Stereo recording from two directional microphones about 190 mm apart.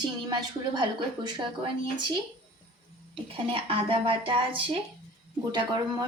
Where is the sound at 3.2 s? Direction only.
30° right (ahead or behind).